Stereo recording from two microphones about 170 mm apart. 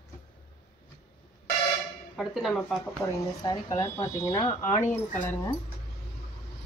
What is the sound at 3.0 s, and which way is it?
Speech, 15° left (ahead or behind).